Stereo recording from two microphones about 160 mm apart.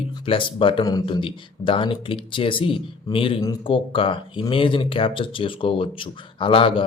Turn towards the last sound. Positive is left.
turn(degrees=35)  # may be behind; listen again after turning